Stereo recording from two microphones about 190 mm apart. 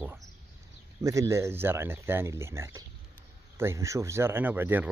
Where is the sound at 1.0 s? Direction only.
15° right (ahead or behind).